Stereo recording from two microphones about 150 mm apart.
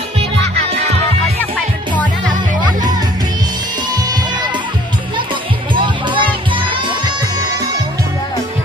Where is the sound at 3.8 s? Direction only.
30° right (ahead or behind).